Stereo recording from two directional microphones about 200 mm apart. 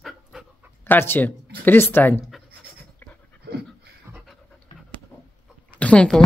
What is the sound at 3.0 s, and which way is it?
Dog, 10° left (ahead or behind).